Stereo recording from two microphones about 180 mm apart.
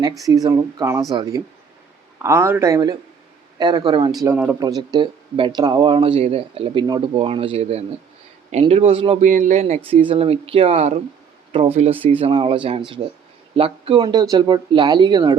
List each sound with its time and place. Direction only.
0.4 s speech: 20° right (ahead or behind)
9.2 s speech: 45° right (ahead or behind); by 15.4 s 25° right (ahead or behind)